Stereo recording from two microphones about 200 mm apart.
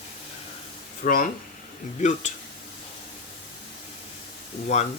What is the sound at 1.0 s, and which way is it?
Speech, 45° left (ahead or behind).